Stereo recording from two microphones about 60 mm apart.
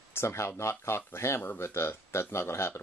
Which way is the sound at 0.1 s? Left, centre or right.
Left.